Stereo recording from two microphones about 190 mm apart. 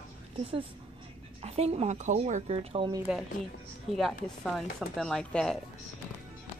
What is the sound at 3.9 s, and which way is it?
Speech, centre (ahead or behind).